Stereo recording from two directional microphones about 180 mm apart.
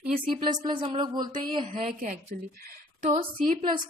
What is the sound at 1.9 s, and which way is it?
A woman's voice, 45° right (ahead or behind).